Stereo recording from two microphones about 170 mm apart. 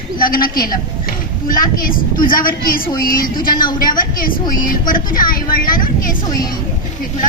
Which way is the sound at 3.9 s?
55° left (ahead or behind).